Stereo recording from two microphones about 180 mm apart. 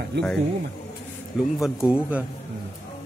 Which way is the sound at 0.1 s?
75° right (ahead or behind).